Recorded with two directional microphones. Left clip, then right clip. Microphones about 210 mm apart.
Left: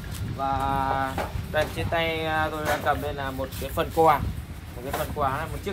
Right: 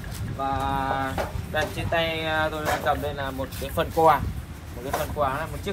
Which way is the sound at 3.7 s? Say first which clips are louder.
Right 1 dB; 10° left (ahead or behind).